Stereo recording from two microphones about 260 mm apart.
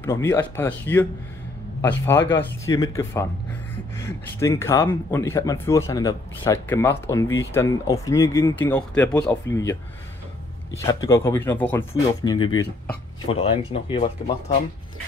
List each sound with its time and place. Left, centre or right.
0.0 s speech: centre
4.4 s speech: centre
10.9 s speech: centre